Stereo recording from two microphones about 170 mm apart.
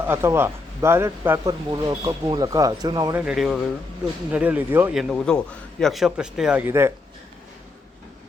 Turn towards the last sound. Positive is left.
turn(degrees=-15)  # may be behind; listen again after turning